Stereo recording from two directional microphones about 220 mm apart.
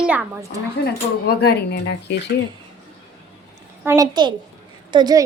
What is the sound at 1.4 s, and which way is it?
Speech, 50° left (ahead or behind).